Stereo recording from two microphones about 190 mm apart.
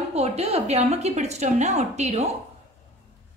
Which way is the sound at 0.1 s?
35° right (ahead or behind).